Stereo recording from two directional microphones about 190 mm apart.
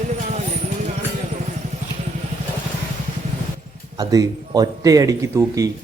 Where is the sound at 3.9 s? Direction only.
20° right (ahead or behind).